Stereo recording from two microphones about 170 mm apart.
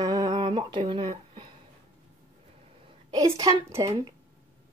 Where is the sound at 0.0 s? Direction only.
25° right (ahead or behind).